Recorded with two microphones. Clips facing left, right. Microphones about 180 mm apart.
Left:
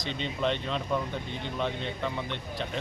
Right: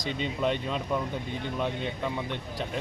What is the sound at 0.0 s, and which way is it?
Speech, 5° right (ahead or behind).